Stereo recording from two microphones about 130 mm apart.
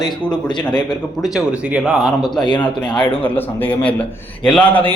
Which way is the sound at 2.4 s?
35° left (ahead or behind).